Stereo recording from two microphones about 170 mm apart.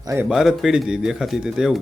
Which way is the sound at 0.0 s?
15° right (ahead or behind).